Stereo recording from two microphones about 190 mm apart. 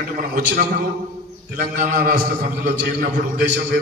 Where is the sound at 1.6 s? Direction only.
45° right (ahead or behind).